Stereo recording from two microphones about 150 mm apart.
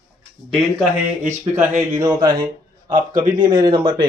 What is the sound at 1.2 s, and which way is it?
Speech, 15° right (ahead or behind).